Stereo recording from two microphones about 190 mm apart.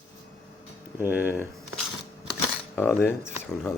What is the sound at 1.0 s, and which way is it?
Speech, 10° right (ahead or behind).